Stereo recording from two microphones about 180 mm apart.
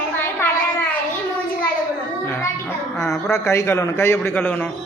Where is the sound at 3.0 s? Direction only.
15° left (ahead or behind).